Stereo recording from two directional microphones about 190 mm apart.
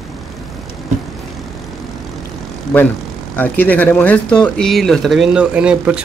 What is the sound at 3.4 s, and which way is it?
Speech, 10° left (ahead or behind).